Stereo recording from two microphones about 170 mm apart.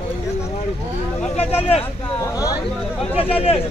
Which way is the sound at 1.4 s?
10° left (ahead or behind).